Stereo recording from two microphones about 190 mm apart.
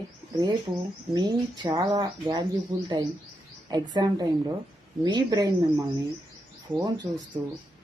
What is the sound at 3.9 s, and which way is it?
Speech, 20° right (ahead or behind).